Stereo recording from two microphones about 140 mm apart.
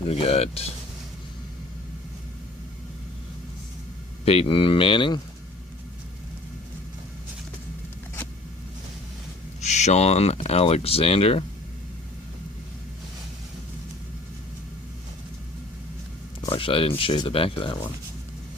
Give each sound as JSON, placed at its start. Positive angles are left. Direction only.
{"t": 0.1, "sound": "speech", "side_deg": 45}
{"t": 4.3, "sound": "speech", "side_deg": 40}
{"t": 9.6, "sound": "speech", "side_deg": 55}
{"t": 16.5, "sound": "speech", "side_deg": 40}